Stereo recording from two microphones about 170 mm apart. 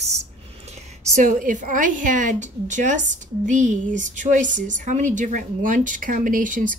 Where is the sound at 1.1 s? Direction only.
50° right (ahead or behind).